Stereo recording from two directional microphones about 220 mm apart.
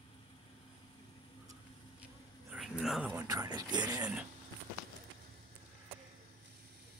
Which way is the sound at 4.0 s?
5° right (ahead or behind).